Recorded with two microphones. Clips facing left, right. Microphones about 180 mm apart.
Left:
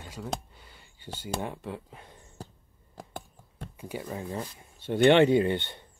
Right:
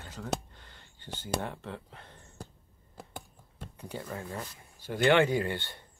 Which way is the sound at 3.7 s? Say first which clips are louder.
Left 3 dB; 10° left (ahead or behind).